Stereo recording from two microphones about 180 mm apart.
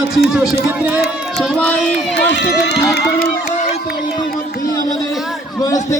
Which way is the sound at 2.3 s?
75° left (ahead or behind).